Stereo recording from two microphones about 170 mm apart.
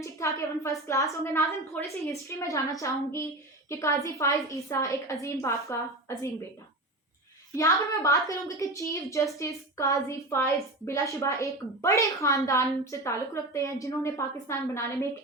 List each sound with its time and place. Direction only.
0.0 s a woman's voice: 15° left (ahead or behind)
7.5 s a woman's voice: 20° left (ahead or behind)